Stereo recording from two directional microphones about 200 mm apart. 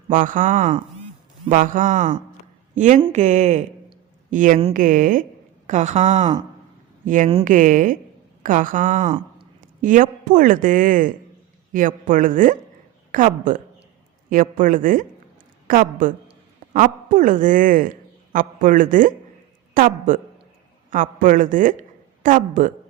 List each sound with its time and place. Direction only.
0.1 s a woman's voice: 40° right (ahead or behind)